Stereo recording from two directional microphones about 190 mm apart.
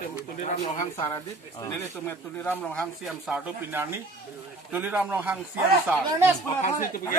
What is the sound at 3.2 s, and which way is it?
A man's voice, 10° right (ahead or behind).